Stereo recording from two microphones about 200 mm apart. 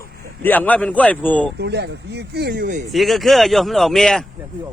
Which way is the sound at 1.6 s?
55° right (ahead or behind).